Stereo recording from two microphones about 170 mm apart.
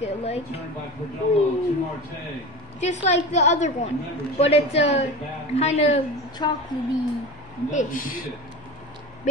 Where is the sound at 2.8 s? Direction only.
45° left (ahead or behind).